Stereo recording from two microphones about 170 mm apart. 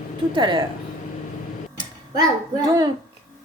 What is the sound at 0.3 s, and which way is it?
Speech, 30° right (ahead or behind).